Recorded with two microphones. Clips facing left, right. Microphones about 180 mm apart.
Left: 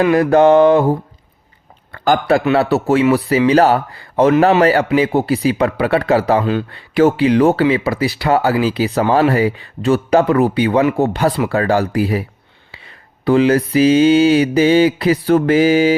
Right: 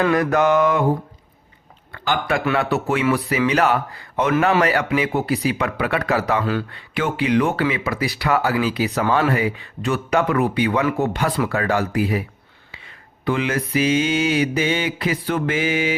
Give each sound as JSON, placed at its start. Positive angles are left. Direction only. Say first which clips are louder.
{"t": 0.1, "sound": "a man's voice", "louder": "left 7 dB", "side_deg": 30}
{"t": 1.9, "sound": "a man's voice", "louder": "left 8 dB", "side_deg": 40}
{"t": 6.7, "sound": "a man's voice", "louder": "left 11 dB", "side_deg": 35}
{"t": 13.2, "sound": "a man's voice", "louder": "left 9 dB", "side_deg": 35}